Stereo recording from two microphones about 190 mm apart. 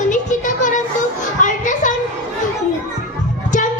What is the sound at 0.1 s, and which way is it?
Music, 40° left (ahead or behind).